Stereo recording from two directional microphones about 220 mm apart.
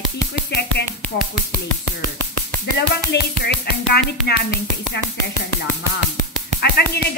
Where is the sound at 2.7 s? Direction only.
50° left (ahead or behind).